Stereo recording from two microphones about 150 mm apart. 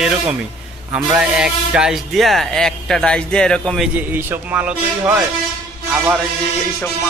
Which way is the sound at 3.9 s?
15° right (ahead or behind).